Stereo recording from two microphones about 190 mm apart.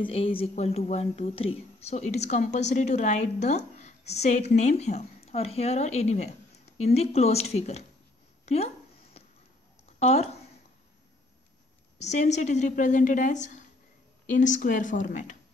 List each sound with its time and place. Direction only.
0.0 s a woman's voice: 30° left (ahead or behind)
9.9 s speech: 35° left (ahead or behind)
12.0 s a woman's voice: 35° left (ahead or behind)